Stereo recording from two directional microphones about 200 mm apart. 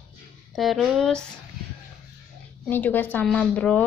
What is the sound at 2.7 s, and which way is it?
Speech, 10° left (ahead or behind).